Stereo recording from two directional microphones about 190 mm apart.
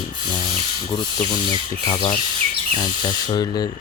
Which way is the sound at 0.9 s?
25° left (ahead or behind).